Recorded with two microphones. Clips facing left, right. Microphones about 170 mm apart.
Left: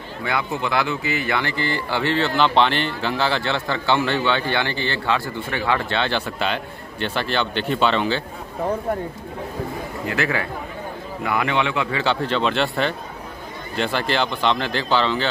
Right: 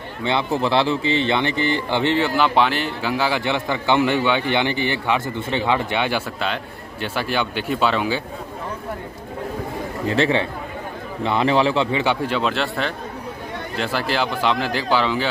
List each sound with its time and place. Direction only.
0.2 s speech: 25° right (ahead or behind); by 8.2 s 5° right (ahead or behind)
10.0 s a man's voice: 30° right (ahead or behind)
11.9 s speech: 15° right (ahead or behind)